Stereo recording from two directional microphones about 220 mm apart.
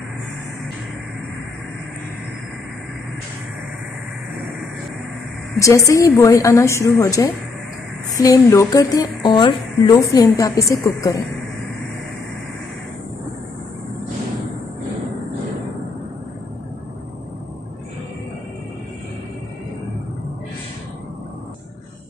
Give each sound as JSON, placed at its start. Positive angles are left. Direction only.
{"t": 5.6, "sound": "speech", "side_deg": 15}